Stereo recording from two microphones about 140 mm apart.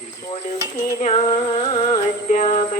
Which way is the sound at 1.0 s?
50° left (ahead or behind).